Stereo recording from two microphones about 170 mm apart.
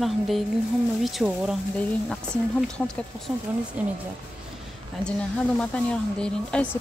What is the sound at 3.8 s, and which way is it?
Speech, 5° right (ahead or behind).